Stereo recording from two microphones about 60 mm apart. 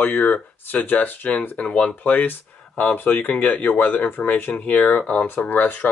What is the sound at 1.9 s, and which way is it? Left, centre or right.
Speech, left.